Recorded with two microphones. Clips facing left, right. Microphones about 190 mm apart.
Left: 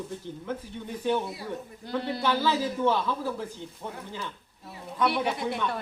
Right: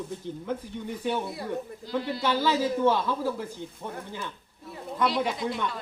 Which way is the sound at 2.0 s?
60° left (ahead or behind).